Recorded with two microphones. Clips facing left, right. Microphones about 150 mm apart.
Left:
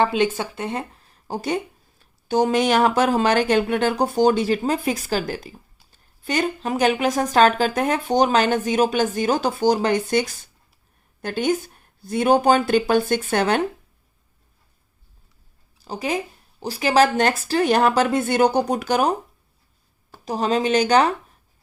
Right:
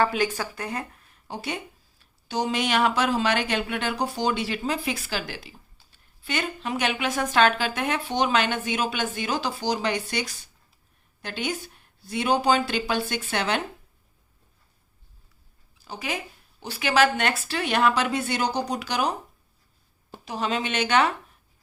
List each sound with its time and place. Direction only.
0.0 s speech: 25° left (ahead or behind); by 13.6 s 45° left (ahead or behind)
15.8 s speech: 35° left (ahead or behind)
20.2 s speech: 40° left (ahead or behind)